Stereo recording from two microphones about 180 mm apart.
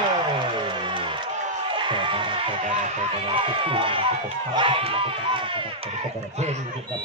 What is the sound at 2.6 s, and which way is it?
Speech, 40° right (ahead or behind).